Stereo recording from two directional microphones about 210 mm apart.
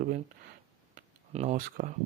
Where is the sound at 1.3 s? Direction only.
35° right (ahead or behind).